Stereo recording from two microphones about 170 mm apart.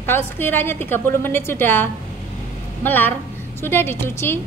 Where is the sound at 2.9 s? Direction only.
10° left (ahead or behind).